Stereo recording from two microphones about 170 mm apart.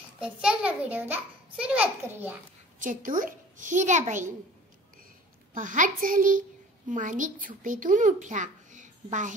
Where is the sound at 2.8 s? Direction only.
50° right (ahead or behind).